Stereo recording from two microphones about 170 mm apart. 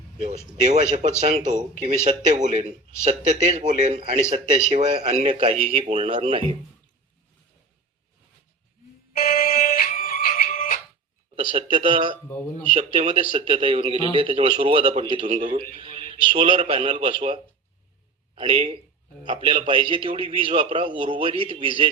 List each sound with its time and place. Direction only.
0.2 s a man's voice: 40° right (ahead or behind)
9.1 s music: 55° left (ahead or behind)
11.5 s a man's voice: 30° right (ahead or behind)
15.4 s speech: 45° right (ahead or behind)
15.8 s a sound: 35° right (ahead or behind)
16.0 s a sound: 55° left (ahead or behind)
16.3 s a man's voice: 35° right (ahead or behind)